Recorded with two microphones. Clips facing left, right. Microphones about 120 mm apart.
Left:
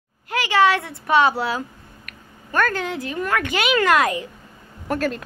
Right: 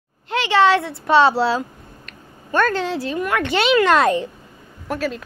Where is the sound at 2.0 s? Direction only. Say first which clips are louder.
Right 6 dB; 25° right (ahead or behind).